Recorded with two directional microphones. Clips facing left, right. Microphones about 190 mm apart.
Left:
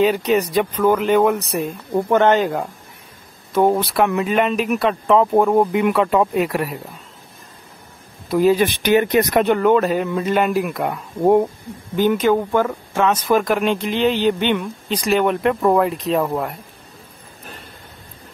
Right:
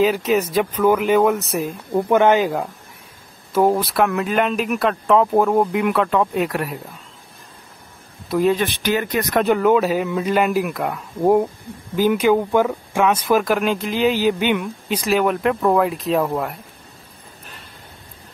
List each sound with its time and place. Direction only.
0.0 s speech: centre (ahead or behind)
8.3 s speech: centre (ahead or behind)
8.6 s speech: 15° left (ahead or behind)
9.4 s speech: 5° right (ahead or behind)